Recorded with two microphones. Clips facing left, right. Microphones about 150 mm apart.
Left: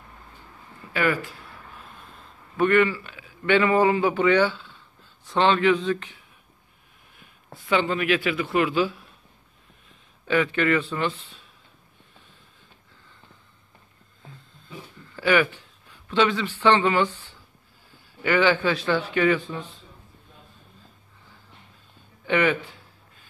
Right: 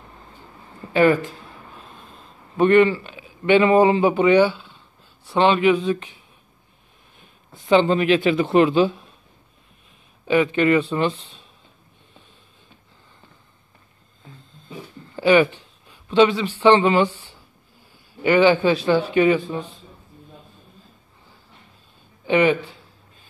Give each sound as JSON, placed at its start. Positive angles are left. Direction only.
{"t": 0.9, "sound": "a man's voice", "side_deg": -25}
{"t": 7.6, "sound": "speech", "side_deg": -25}
{"t": 15.1, "sound": "a man's voice", "side_deg": -20}
{"t": 22.2, "sound": "a man's voice", "side_deg": -20}